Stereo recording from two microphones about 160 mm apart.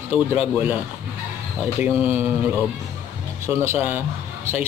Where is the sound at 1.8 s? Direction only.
10° right (ahead or behind).